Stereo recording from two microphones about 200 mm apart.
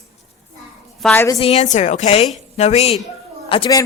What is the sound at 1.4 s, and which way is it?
A woman's voice, 35° left (ahead or behind).